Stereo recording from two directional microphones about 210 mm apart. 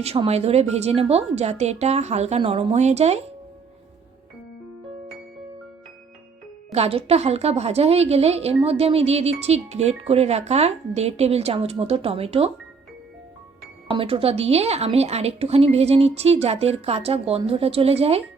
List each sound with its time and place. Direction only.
0.0 s a woman's voice: 30° right (ahead or behind)
6.7 s a woman's voice: 30° right (ahead or behind)
13.9 s a woman's voice: 25° right (ahead or behind)